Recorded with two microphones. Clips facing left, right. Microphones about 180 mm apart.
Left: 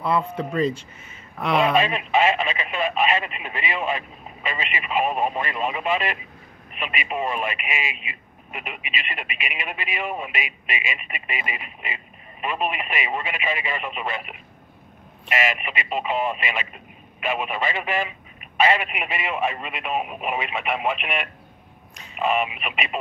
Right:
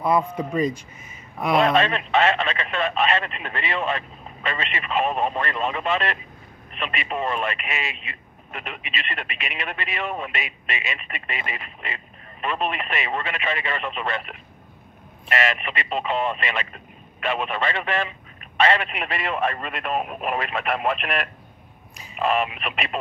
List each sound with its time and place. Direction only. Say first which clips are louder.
0.0 s speech: right 2 dB; 15° right (ahead or behind)
1.6 s speech: right 1 dB; 5° left (ahead or behind)